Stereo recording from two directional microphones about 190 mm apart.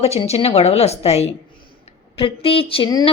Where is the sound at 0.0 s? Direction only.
35° left (ahead or behind).